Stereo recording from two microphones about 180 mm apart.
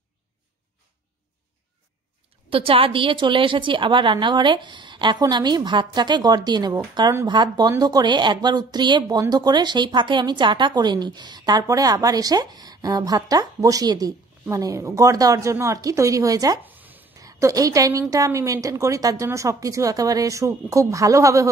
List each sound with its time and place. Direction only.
2.5 s a woman's voice: 30° right (ahead or behind)